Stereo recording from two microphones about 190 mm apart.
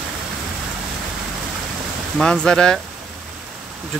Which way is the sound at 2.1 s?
5° left (ahead or behind).